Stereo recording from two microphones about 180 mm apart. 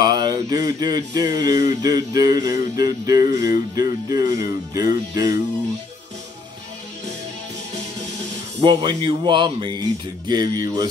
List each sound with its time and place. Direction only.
0.0 s speech: 25° right (ahead or behind)
8.5 s speech: 30° right (ahead or behind)